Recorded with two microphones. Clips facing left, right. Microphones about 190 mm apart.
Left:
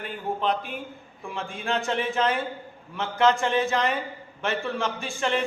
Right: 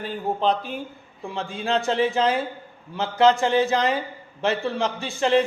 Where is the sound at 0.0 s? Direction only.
35° right (ahead or behind).